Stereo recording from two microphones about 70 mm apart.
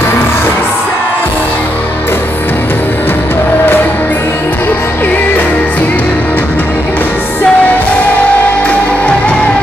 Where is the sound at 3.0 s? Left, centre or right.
Left.